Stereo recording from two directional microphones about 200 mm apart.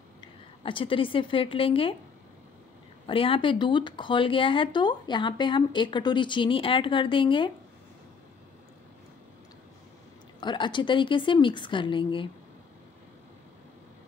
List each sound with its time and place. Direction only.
0.2 s a woman's voice: 25° left (ahead or behind)
3.1 s speech: 25° left (ahead or behind)
10.4 s speech: 25° left (ahead or behind)